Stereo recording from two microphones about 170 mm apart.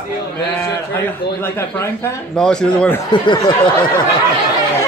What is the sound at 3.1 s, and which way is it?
Speech, 30° left (ahead or behind).